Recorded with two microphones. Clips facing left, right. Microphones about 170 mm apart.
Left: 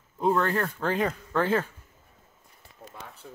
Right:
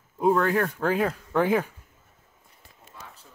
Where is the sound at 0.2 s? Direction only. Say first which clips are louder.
Right 3 dB; 10° right (ahead or behind).